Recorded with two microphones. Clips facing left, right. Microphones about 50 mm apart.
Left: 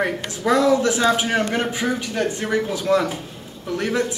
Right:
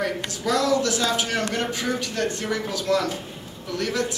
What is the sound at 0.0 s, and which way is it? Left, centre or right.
A man's voice, left.